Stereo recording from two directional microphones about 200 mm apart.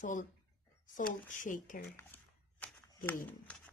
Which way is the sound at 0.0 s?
40° left (ahead or behind).